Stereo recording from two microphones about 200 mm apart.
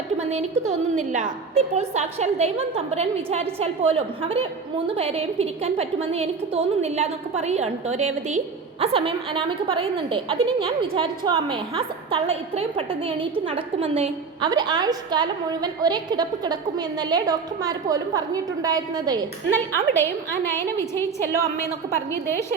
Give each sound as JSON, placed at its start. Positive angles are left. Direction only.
{"t": 0.2, "sound": "a woman's voice", "side_deg": -35}
{"t": 19.5, "sound": "a woman's voice", "side_deg": 10}